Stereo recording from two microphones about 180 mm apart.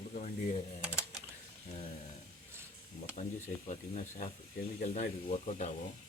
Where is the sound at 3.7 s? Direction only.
40° left (ahead or behind).